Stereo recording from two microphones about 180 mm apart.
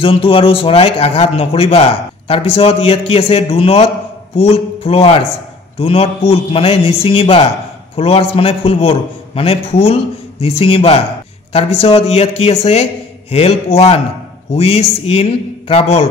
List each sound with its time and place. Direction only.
0.0 s a man's voice: 30° left (ahead or behind)